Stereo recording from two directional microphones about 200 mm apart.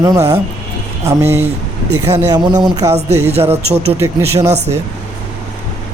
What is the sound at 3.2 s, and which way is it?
Speech, 30° right (ahead or behind).